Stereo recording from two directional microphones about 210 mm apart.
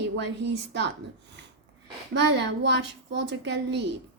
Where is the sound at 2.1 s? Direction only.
55° right (ahead or behind).